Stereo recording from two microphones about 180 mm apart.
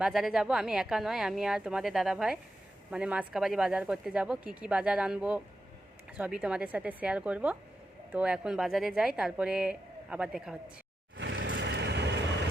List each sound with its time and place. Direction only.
0.0 s a woman's voice: centre (ahead or behind)
11.2 s vehicle: 85° right